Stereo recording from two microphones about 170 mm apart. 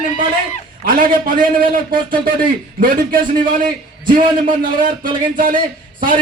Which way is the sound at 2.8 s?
55° right (ahead or behind).